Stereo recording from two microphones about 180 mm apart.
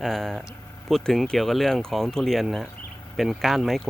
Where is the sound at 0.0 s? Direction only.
Centre (ahead or behind).